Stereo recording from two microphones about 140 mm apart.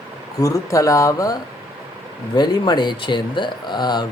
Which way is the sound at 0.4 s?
25° left (ahead or behind).